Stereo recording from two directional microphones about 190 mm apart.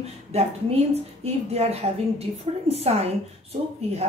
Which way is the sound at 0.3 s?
35° right (ahead or behind).